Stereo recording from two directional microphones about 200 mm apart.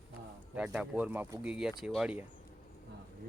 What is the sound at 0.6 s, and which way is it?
Speech, 5° right (ahead or behind).